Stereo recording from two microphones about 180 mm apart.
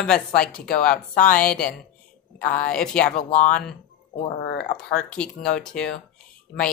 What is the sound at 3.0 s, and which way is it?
Speech, 55° left (ahead or behind).